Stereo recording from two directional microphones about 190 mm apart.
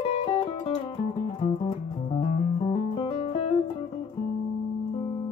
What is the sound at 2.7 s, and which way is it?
Music, 25° left (ahead or behind).